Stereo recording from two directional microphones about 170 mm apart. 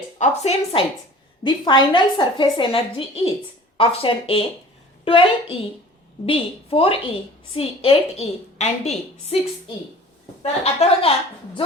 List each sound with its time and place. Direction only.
0.2 s a woman's voice: 35° left (ahead or behind)
10.4 s a woman's voice: 35° left (ahead or behind)